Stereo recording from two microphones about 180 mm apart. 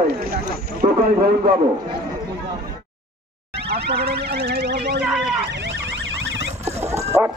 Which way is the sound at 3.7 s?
65° right (ahead or behind).